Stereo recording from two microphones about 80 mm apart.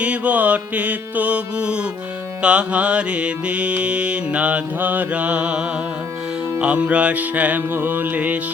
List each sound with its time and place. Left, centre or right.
0.0 s mantra: centre